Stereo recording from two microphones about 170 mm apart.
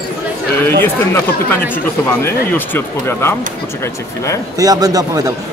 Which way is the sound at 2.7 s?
15° left (ahead or behind).